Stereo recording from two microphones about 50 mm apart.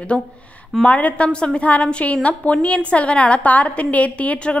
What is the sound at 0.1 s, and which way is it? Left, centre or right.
A woman's voice, centre.